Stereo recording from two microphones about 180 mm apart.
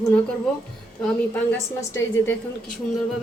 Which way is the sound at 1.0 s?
10° left (ahead or behind).